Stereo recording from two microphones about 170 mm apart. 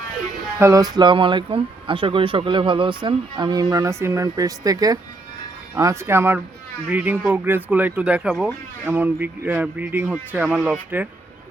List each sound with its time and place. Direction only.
0.6 s speech: 20° right (ahead or behind)